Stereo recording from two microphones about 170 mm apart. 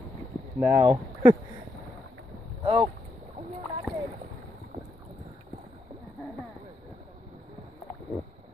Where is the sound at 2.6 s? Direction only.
30° right (ahead or behind).